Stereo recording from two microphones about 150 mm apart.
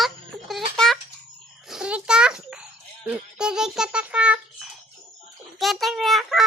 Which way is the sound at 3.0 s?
5° right (ahead or behind).